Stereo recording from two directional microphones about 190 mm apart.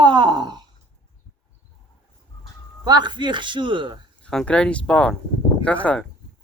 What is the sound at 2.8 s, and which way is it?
Speech, 20° right (ahead or behind).